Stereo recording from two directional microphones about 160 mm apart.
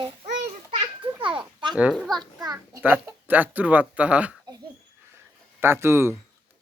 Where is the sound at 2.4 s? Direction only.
25° right (ahead or behind).